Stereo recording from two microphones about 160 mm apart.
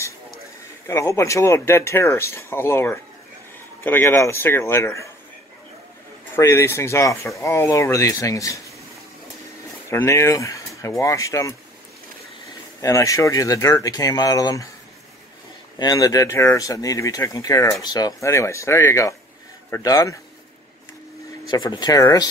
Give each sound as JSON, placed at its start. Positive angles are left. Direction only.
{"t": 0.8, "sound": "speech", "side_deg": 20}
{"t": 6.3, "sound": "speech", "side_deg": 15}
{"t": 9.8, "sound": "speech", "side_deg": 15}
{"t": 12.8, "sound": "speech", "side_deg": 20}
{"t": 15.8, "sound": "speech", "side_deg": 25}
{"t": 21.5, "sound": "speech", "side_deg": 30}